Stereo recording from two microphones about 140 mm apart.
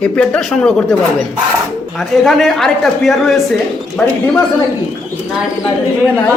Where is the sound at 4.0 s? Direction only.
10° left (ahead or behind).